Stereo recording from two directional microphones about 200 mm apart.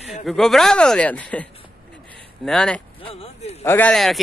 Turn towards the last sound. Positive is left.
turn(degrees=0)  # may be behind; listen again after turning